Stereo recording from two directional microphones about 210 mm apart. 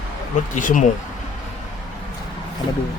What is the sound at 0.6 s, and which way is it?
Speech, 40° left (ahead or behind).